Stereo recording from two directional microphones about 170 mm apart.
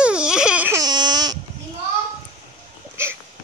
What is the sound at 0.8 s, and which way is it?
Speech, 25° right (ahead or behind).